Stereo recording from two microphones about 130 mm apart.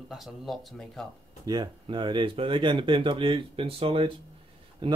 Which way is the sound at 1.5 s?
35° right (ahead or behind).